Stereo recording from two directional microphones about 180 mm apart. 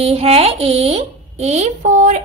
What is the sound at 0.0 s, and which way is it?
Speech, 35° right (ahead or behind).